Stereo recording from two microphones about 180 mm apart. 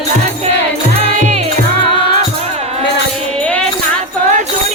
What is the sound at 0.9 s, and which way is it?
Music, 35° right (ahead or behind).